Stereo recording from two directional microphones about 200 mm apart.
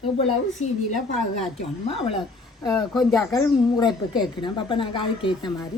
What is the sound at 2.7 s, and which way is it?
Speech, centre (ahead or behind).